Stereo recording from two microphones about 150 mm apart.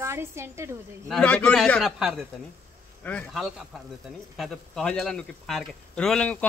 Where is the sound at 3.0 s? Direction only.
10° left (ahead or behind).